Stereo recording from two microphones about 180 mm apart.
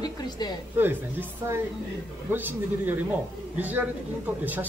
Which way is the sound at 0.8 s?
10° right (ahead or behind).